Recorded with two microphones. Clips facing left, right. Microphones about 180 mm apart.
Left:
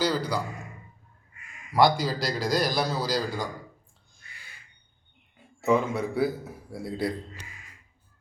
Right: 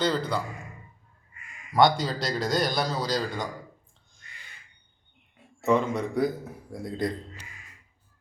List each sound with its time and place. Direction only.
0.0 s a man's voice: 5° left (ahead or behind)
1.7 s a man's voice: centre (ahead or behind)
5.4 s a man's voice: centre (ahead or behind)